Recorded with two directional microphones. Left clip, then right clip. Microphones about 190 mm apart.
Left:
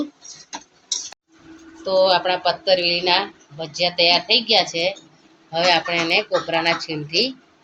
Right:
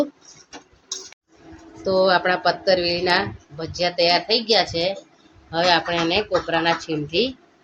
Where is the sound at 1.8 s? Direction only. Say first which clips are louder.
Left 1 dB; 30° right (ahead or behind).